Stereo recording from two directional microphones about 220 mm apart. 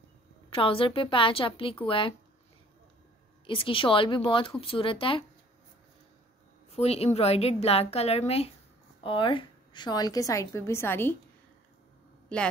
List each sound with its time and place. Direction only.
0.5 s a woman's voice: 25° left (ahead or behind)
3.4 s a woman's voice: 25° left (ahead or behind)
6.7 s a woman's voice: 30° left (ahead or behind); by 11.1 s 10° left (ahead or behind)